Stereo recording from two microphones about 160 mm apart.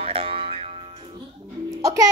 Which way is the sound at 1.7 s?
20° right (ahead or behind).